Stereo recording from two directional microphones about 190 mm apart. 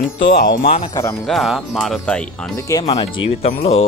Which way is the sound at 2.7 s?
20° left (ahead or behind).